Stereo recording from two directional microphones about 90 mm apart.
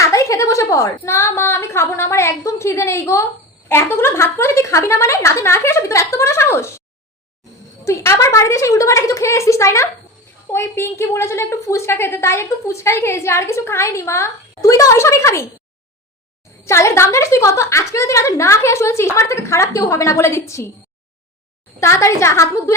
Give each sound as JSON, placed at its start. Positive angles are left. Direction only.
{"t": 0.0, "sound": "a woman's voice", "side_deg": 35}
{"t": 7.9, "sound": "a woman's voice", "side_deg": 30}
{"t": 16.6, "sound": "a woman's voice", "side_deg": 30}
{"t": 21.8, "sound": "a woman's voice", "side_deg": 35}